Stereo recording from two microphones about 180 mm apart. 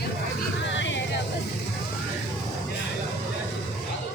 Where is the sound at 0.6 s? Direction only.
90° left.